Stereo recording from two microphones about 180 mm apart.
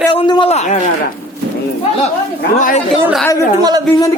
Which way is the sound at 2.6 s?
45° left (ahead or behind).